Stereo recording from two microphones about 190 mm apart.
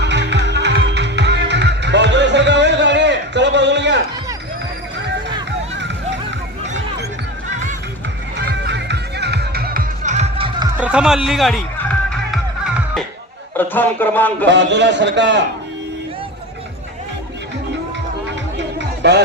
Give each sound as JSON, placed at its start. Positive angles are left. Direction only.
{"t": 0.0, "sound": "music", "side_deg": -65}
{"t": 8.4, "sound": "music", "side_deg": -60}
{"t": 10.8, "sound": "speech", "side_deg": -5}
{"t": 12.3, "sound": "music", "side_deg": 0}
{"t": 13.6, "sound": "a man's voice", "side_deg": 10}
{"t": 14.4, "sound": "a man's voice", "side_deg": -70}
{"t": 18.5, "sound": "music", "side_deg": -65}